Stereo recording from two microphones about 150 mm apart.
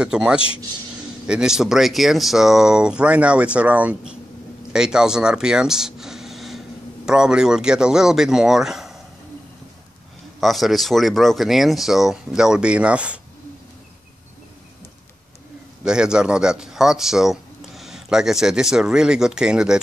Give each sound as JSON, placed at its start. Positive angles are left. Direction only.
{"t": 0.0, "sound": "speech", "side_deg": -5}
{"t": 4.7, "sound": "a sound", "side_deg": -5}
{"t": 7.1, "sound": "speech", "side_deg": -5}
{"t": 10.4, "sound": "speech", "side_deg": 0}
{"t": 15.8, "sound": "speech", "side_deg": -5}